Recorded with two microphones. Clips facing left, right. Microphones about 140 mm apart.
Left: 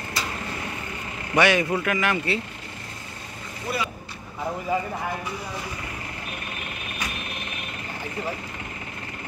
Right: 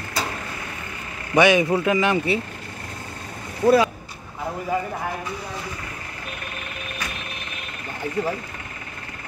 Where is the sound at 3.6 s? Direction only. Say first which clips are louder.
Right 13 dB; 90° right.